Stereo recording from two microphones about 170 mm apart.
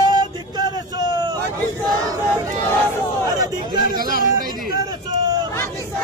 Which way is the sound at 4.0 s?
55° right (ahead or behind).